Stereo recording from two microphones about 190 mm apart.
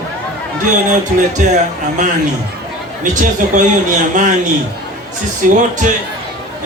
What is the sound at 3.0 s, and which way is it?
A man's voice, 40° right (ahead or behind).